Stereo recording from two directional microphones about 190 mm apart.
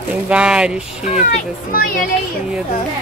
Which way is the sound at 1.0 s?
40° left (ahead or behind).